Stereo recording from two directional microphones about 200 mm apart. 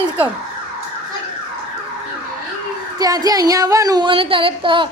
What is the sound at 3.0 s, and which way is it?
Speech, 20° right (ahead or behind).